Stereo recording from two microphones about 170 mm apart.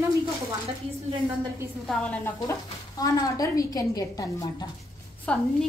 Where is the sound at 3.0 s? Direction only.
20° left (ahead or behind).